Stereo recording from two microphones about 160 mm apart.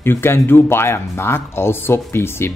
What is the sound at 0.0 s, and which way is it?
Speech, 15° left (ahead or behind).